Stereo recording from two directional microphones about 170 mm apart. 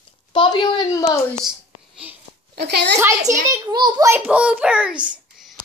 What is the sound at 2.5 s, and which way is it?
Speech, 75° right (ahead or behind).